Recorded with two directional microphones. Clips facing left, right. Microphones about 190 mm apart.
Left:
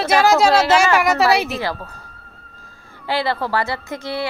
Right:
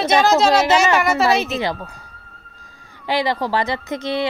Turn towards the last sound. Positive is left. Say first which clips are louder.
# right 3 dB
turn(degrees=-20)  # may be behind; listen again after turning